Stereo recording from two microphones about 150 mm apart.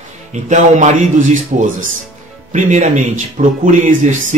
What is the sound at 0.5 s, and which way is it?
Speech, 55° right (ahead or behind).